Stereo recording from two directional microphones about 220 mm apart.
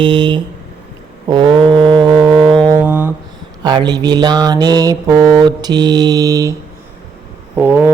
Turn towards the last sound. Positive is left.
turn(degrees=-10)  # may be behind; listen again after turning